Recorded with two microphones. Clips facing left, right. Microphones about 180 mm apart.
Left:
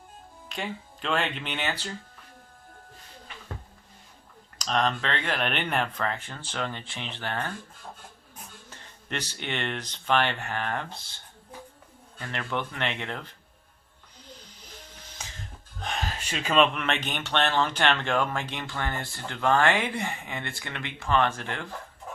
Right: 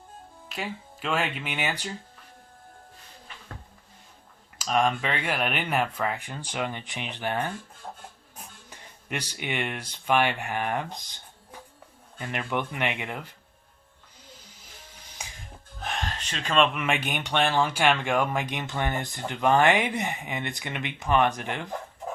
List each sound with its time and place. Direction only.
0.4 s speech: 5° right (ahead or behind)
4.5 s speech: 5° right (ahead or behind)
8.7 s speech: 10° right (ahead or behind)
12.2 s speech: 15° right (ahead or behind)
15.2 s music: 10° right (ahead or behind)
15.8 s a sound: centre (ahead or behind)
16.7 s speech: 10° right (ahead or behind)